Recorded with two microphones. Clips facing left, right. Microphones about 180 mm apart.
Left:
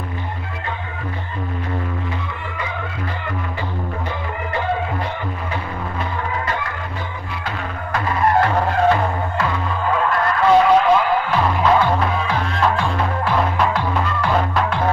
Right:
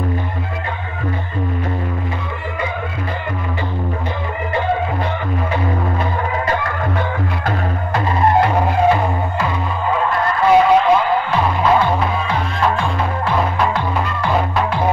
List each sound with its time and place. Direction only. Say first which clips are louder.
7.9 s music: right 2 dB; 30° right (ahead or behind)
8.4 s music: right 2 dB; 15° right (ahead or behind)